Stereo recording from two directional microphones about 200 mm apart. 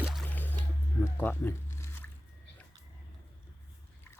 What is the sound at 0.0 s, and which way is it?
Squish, centre (ahead or behind).